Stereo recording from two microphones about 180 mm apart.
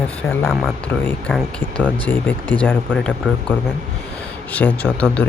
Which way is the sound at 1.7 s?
10° left (ahead or behind).